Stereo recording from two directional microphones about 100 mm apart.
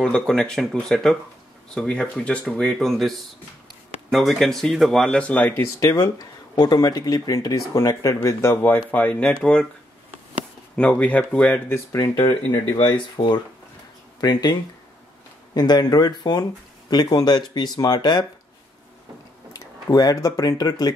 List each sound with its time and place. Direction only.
0.0 s a man's voice: 5° left (ahead or behind)
5.6 s speech: 30° left (ahead or behind)
6.1 s speech: 45° left (ahead or behind); by 8.7 s 25° left (ahead or behind)
8.7 s speech: 15° left (ahead or behind)
10.8 s speech: 15° left (ahead or behind)
11.9 s speech: 35° left (ahead or behind)
12.8 s speech: 55° left (ahead or behind)
14.2 s speech: 45° left (ahead or behind)
19.5 s speech: 40° left (ahead or behind)